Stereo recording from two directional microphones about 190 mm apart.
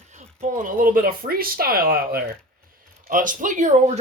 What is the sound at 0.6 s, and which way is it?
Speech, 45° right (ahead or behind).